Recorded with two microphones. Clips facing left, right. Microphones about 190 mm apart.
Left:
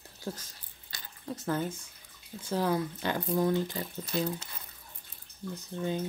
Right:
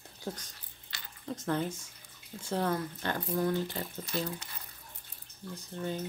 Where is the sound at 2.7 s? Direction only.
15° left (ahead or behind).